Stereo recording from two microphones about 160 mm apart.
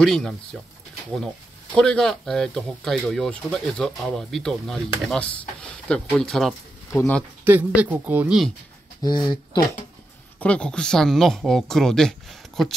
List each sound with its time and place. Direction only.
0.0 s speech: centre (ahead or behind)
1.8 s speech: 5° left (ahead or behind)
7.4 s speech: 10° right (ahead or behind)
9.0 s speech: 25° left (ahead or behind)
10.4 s speech: 5° left (ahead or behind)